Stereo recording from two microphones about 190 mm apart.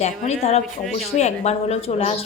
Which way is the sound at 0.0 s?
35° left (ahead or behind).